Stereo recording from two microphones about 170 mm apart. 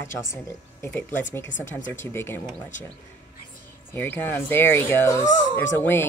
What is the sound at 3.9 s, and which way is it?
Speech, 10° left (ahead or behind).